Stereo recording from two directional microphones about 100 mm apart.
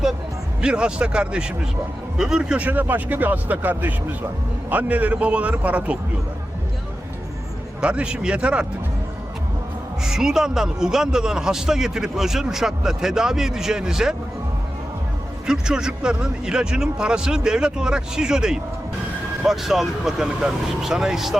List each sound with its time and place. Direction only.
0.6 s a man's voice: 10° right (ahead or behind)
7.8 s a man's voice: 10° right (ahead or behind)
10.0 s a man's voice: 5° right (ahead or behind)
15.4 s a man's voice: 5° right (ahead or behind)